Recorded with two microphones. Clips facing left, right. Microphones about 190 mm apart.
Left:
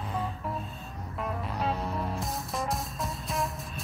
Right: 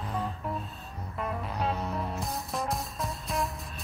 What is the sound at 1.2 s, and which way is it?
Music, centre (ahead or behind).